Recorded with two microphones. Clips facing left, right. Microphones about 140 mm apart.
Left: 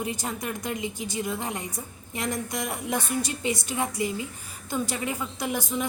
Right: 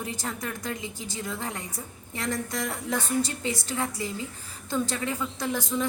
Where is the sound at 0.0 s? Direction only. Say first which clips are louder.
Left 2 dB; 15° left (ahead or behind).